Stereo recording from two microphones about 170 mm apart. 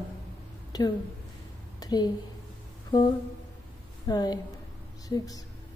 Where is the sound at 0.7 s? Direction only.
25° left (ahead or behind).